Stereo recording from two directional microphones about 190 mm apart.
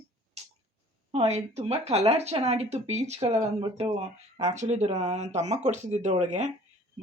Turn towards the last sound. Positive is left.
turn(degrees=-40)  # may be behind; listen again after turning